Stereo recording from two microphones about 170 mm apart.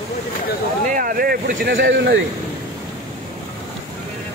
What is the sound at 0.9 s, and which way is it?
Speech, 55° right (ahead or behind).